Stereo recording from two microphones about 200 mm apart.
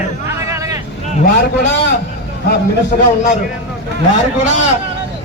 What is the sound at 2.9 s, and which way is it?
Speech, 45° left (ahead or behind).